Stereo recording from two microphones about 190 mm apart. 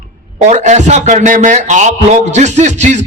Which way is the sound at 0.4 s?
40° right (ahead or behind).